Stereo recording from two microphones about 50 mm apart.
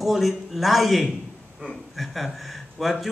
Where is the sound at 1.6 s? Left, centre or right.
Right.